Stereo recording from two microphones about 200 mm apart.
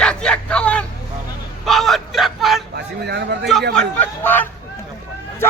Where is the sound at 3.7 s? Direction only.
10° left (ahead or behind).